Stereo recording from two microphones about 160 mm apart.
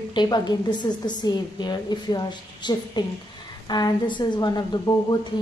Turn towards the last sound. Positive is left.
turn(degrees=25)  # may be behind; listen again after turning